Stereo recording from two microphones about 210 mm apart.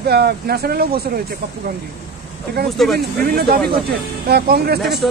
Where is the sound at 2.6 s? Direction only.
50° right (ahead or behind).